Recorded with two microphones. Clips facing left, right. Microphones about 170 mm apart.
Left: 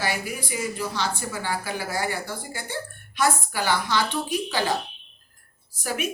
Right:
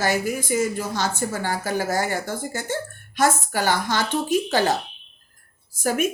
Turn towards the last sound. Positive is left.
turn(degrees=-45)  # may be behind; listen again after turning